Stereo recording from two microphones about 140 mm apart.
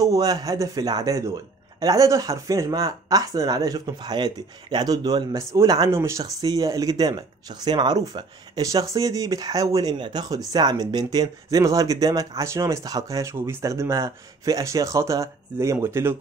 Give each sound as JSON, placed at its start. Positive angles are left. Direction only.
{"t": 0.0, "sound": "a man's voice", "side_deg": -25}